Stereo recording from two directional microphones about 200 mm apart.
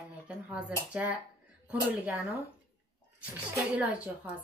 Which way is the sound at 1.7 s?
10° right (ahead or behind).